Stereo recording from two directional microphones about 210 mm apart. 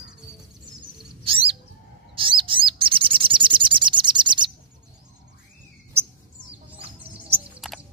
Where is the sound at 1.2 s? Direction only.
25° right (ahead or behind).